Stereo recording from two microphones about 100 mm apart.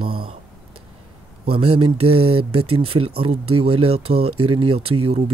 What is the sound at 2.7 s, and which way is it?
Speech, 80° right.